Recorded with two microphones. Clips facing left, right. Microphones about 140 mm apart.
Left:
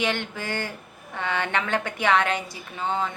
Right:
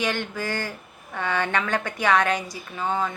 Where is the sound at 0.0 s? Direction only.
20° left (ahead or behind).